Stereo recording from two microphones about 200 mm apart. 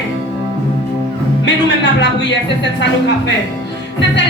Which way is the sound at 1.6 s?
60° left (ahead or behind).